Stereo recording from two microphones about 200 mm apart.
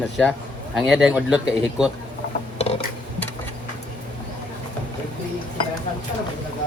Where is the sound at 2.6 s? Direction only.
30° left (ahead or behind).